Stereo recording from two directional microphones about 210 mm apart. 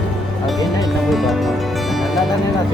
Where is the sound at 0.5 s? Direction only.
20° left (ahead or behind).